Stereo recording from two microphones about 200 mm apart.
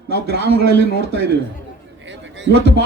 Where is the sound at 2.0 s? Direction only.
65° right (ahead or behind).